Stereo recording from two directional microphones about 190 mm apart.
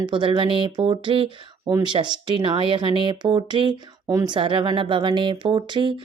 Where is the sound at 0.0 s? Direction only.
25° right (ahead or behind).